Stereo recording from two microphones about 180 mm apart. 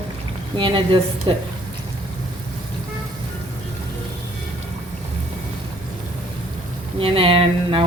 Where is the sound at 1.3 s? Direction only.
25° right (ahead or behind).